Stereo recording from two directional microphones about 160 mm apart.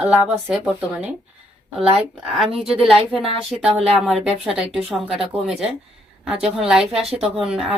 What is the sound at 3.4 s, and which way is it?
Speech, 5° right (ahead or behind).